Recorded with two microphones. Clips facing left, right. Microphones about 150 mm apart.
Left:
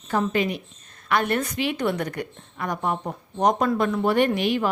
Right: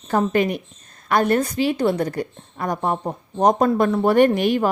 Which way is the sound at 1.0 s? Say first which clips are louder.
Right 5 dB; 40° right (ahead or behind).